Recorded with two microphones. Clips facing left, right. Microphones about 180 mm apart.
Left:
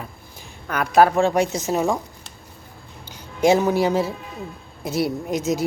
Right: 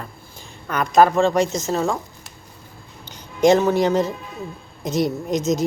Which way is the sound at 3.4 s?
10° left (ahead or behind).